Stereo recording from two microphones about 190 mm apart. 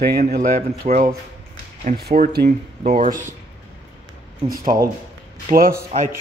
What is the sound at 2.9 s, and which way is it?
Speech, 40° right (ahead or behind).